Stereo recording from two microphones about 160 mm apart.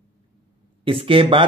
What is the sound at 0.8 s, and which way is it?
Speech, 35° right (ahead or behind).